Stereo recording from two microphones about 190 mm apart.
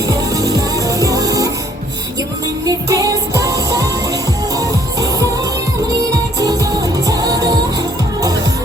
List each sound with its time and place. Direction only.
0.3 s music: 15° right (ahead or behind)
2.6 s music: 20° right (ahead or behind)
7.1 s music: 20° right (ahead or behind)